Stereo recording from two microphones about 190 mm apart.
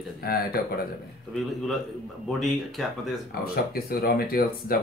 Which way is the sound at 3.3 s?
55° left (ahead or behind).